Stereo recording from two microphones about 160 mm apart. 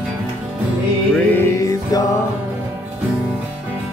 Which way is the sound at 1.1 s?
15° left (ahead or behind).